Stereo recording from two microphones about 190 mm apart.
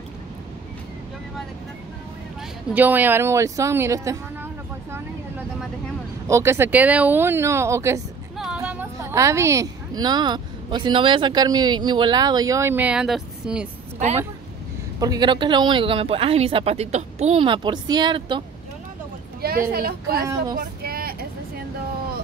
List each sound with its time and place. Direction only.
2.7 s a woman's voice: 10° right (ahead or behind)
6.2 s a woman's voice: 15° right (ahead or behind)
8.4 s a woman's voice: 5° right (ahead or behind)
15.0 s speech: 20° right (ahead or behind)
19.4 s speech: 55° right (ahead or behind)
20.5 s vehicle: 50° right (ahead or behind)